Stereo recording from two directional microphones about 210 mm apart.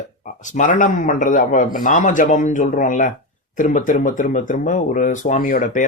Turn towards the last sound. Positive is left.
turn(degrees=40)  # may be behind; listen again after turning